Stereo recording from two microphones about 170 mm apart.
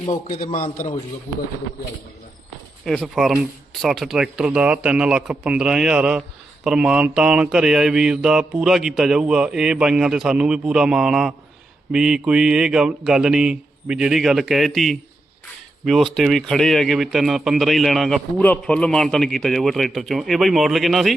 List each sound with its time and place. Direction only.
0.5 s a man's voice: 55° left (ahead or behind)
2.8 s a man's voice: centre (ahead or behind)
16.1 s a man's voice: centre (ahead or behind)